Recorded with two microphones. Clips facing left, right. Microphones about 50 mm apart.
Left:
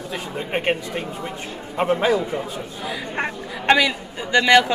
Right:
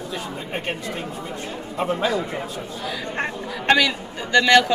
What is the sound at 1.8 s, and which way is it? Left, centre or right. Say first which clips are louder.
Speech: left 4 dB; left.